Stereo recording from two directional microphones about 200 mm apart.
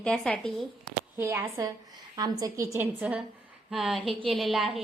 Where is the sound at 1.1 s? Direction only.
10° right (ahead or behind).